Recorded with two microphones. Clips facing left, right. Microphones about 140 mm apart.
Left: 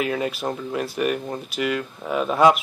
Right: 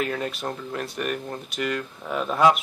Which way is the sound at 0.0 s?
5° left (ahead or behind).